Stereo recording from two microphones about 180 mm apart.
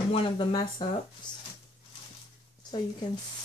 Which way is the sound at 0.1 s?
25° left (ahead or behind).